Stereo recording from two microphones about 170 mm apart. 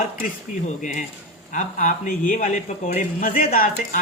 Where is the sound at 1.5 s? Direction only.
50° left (ahead or behind).